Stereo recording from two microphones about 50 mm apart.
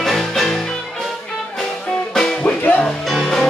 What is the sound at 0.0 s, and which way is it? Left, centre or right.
Music, centre.